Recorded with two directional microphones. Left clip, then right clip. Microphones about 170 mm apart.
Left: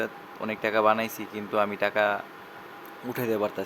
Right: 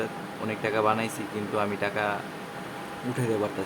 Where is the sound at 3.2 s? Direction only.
40° left (ahead or behind).